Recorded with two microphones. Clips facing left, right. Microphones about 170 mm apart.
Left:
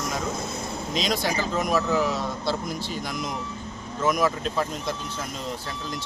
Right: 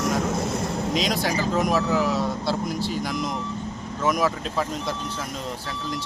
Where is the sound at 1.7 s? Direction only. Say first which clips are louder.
Right 1 dB; 5° right (ahead or behind).